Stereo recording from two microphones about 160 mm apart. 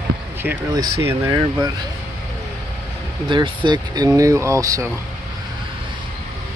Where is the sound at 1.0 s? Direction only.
15° right (ahead or behind).